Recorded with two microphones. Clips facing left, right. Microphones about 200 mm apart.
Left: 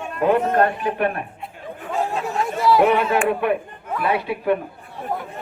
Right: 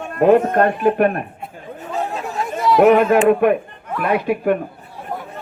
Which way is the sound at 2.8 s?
45° right (ahead or behind).